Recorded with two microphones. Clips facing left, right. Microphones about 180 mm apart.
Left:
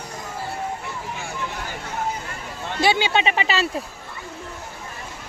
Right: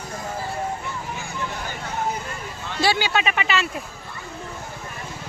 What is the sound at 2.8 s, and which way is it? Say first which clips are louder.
Speech: left 2 dB; 20° left (ahead or behind).